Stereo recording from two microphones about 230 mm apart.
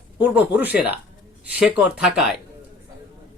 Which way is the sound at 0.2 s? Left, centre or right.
Centre.